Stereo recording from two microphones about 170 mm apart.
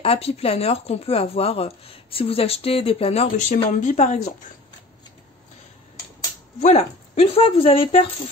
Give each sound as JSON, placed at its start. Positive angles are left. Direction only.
{"t": 0.0, "sound": "a woman's voice", "side_deg": 35}
{"t": 6.6, "sound": "speech", "side_deg": 35}